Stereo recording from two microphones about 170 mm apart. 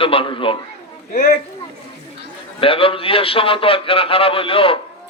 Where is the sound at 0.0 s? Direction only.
30° left (ahead or behind).